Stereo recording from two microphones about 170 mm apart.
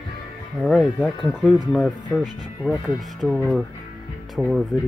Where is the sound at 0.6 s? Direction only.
Centre (ahead or behind).